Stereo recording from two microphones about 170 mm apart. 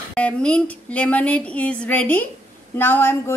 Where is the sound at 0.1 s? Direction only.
5° left (ahead or behind).